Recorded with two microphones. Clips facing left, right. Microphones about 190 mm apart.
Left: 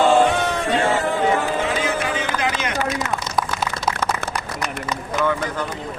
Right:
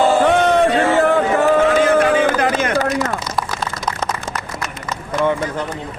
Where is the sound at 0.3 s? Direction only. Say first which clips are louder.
Right 7 dB; 65° right (ahead or behind).